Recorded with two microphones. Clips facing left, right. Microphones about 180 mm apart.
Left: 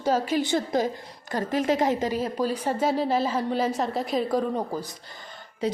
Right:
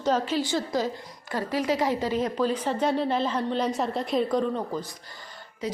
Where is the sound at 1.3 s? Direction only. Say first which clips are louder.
Left 2 dB; 45° left (ahead or behind).